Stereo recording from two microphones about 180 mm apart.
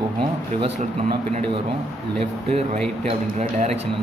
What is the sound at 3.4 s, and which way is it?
Speech, 35° right (ahead or behind).